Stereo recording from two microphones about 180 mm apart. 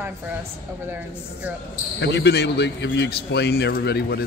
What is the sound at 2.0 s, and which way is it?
A man's voice, 70° left (ahead or behind).